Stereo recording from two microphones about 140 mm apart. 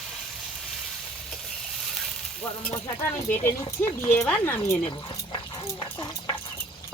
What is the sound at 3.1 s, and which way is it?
Speech, 15° left (ahead or behind).